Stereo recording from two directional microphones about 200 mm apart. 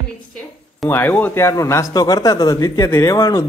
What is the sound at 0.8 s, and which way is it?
A man's voice, 10° left (ahead or behind).